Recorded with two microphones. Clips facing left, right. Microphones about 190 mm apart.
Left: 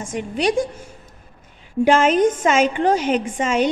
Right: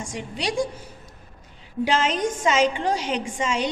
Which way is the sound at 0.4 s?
55° left (ahead or behind).